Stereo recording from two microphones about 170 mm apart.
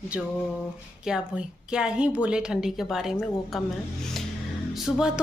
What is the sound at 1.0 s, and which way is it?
A woman's voice, 5° right (ahead or behind).